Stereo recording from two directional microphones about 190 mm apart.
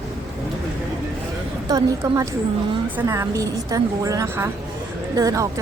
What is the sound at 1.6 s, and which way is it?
A woman's voice, 20° right (ahead or behind).